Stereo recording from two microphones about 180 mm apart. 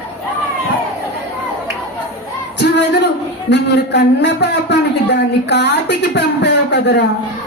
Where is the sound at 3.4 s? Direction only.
70° left (ahead or behind).